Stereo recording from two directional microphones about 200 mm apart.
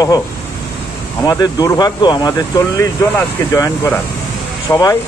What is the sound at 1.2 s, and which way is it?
Speech, 20° left (ahead or behind).